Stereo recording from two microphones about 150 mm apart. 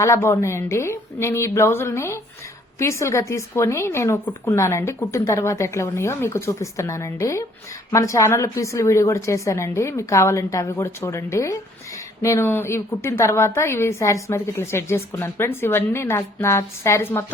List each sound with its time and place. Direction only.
0.0 s a woman's voice: 20° left (ahead or behind)